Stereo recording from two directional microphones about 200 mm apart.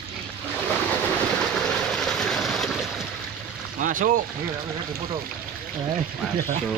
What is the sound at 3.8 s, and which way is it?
Boat, 40° right (ahead or behind).